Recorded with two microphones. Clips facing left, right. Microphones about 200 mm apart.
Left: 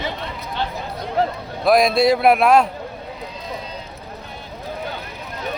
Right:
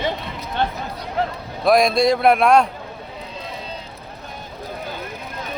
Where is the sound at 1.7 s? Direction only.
Centre (ahead or behind).